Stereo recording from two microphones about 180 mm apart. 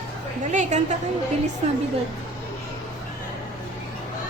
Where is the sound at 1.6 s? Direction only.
35° right (ahead or behind).